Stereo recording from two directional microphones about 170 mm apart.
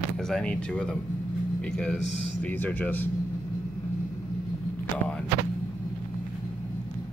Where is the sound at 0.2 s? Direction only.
5° left (ahead or behind).